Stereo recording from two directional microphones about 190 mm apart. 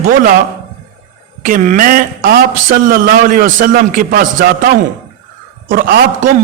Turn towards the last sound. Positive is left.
turn(degrees=-50)  # may be behind; listen again after turning